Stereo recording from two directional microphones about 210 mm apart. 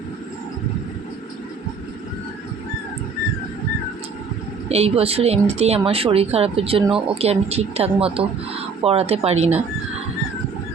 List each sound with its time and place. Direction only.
4.7 s speech: 30° right (ahead or behind)